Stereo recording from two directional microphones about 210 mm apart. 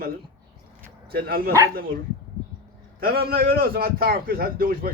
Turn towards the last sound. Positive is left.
turn(degrees=-45)  # may be behind; listen again after turning